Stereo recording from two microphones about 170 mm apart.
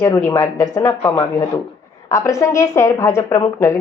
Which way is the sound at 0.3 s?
25° left (ahead or behind).